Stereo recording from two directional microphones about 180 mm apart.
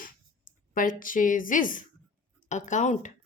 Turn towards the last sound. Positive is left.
turn(degrees=40)  # may be behind; listen again after turning